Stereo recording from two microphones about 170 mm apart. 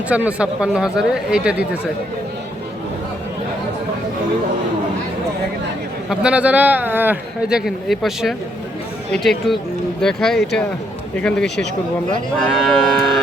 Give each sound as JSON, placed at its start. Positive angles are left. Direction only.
{"t": 0.1, "sound": "speech", "side_deg": -10}
{"t": 6.1, "sound": "speech", "side_deg": -5}
{"t": 9.5, "sound": "speech", "side_deg": 0}
{"t": 11.4, "sound": "speech", "side_deg": 90}
{"t": 12.4, "sound": "speech", "side_deg": 0}